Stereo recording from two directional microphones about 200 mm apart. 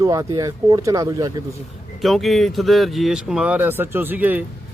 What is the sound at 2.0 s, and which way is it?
Speech, centre (ahead or behind).